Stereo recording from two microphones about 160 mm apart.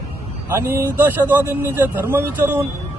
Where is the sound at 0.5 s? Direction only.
15° right (ahead or behind).